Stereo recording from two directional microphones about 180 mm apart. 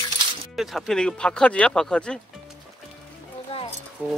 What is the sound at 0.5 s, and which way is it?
Speech, centre (ahead or behind).